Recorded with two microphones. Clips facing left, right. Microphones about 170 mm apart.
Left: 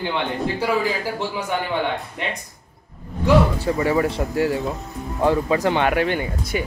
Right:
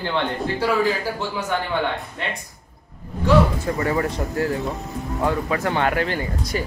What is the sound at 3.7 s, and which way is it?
Speech, 15° left (ahead or behind).